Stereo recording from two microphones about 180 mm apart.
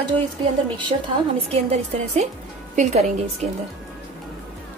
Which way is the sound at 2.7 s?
40° right (ahead or behind).